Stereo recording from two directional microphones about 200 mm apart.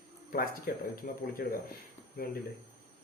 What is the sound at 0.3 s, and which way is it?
Speech, 45° left (ahead or behind).